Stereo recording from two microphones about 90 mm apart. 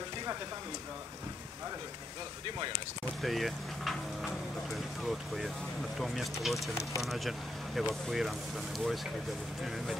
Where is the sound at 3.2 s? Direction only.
Centre (ahead or behind).